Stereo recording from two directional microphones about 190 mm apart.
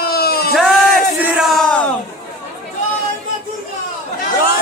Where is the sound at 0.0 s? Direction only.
55° left (ahead or behind).